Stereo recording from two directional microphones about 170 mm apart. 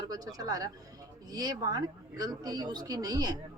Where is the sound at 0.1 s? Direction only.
20° right (ahead or behind).